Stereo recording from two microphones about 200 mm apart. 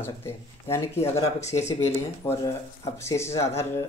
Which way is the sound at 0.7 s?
10° left (ahead or behind).